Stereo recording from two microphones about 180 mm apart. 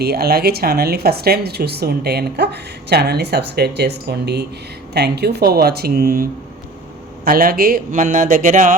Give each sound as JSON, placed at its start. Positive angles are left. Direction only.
{"t": 0.0, "sound": "speech", "side_deg": -60}
{"t": 7.3, "sound": "speech", "side_deg": -55}